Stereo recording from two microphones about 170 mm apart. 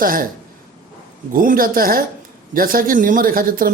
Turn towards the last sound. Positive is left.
turn(degrees=-55)  # may be behind; listen again after turning